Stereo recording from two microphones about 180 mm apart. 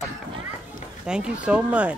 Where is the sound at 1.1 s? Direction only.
5° right (ahead or behind).